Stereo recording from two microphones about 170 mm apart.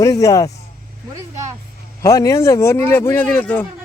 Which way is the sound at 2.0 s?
20° left (ahead or behind).